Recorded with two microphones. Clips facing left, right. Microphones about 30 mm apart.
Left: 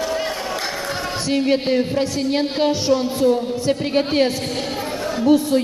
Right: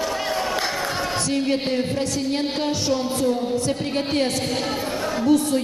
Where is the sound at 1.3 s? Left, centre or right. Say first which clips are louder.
Left 6 dB; centre.